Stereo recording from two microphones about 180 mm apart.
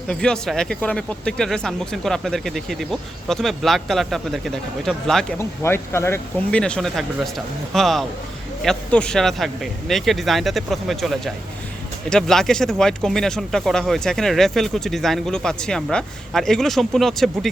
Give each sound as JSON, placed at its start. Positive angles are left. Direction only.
{"t": 0.1, "sound": "speech", "side_deg": 5}
{"t": 5.4, "sound": "speech", "side_deg": 15}